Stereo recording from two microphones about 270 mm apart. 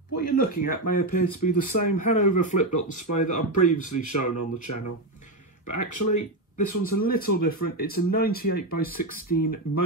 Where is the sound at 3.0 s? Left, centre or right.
Left.